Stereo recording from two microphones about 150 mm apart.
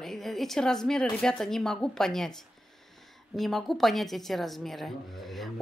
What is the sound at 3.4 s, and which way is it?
A woman's voice, centre (ahead or behind).